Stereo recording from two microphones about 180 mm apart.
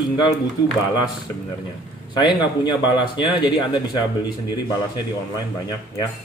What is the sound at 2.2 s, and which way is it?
A man's voice, 25° left (ahead or behind).